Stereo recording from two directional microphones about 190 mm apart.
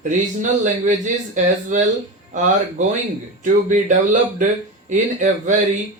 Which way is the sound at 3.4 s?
40° right (ahead or behind).